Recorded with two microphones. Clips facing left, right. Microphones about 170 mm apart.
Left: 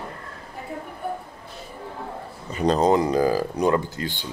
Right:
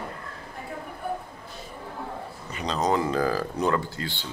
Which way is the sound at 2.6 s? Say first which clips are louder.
Left 9 dB; 40° left (ahead or behind).